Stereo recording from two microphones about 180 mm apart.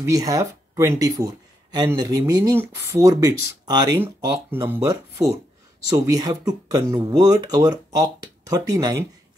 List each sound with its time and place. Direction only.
0.1 s speech: 20° right (ahead or behind)